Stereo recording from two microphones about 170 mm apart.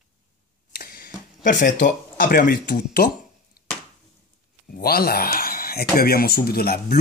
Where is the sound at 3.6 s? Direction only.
60° left (ahead or behind).